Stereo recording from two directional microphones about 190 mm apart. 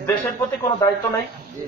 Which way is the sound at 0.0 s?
10° left (ahead or behind).